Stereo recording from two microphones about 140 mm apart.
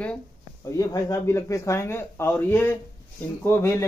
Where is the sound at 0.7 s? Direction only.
25° left (ahead or behind).